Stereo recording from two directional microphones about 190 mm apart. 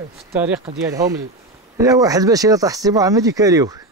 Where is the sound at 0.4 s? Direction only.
5° right (ahead or behind).